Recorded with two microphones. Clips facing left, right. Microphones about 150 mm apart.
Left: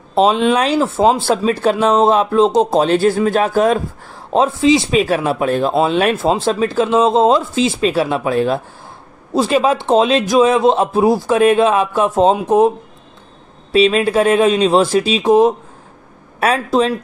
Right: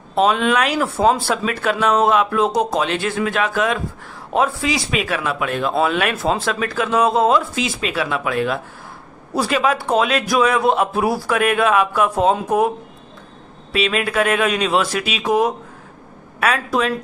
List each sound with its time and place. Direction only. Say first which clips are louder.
0.1 s speech: left 4 dB; 30° left (ahead or behind)
4.3 s speech: left 7 dB; 25° left (ahead or behind)